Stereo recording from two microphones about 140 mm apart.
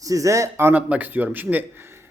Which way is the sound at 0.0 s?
25° right (ahead or behind).